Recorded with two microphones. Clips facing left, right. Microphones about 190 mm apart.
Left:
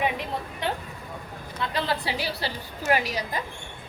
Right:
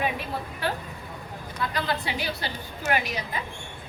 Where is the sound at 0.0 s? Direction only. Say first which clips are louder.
Left 1 dB; 20° left (ahead or behind).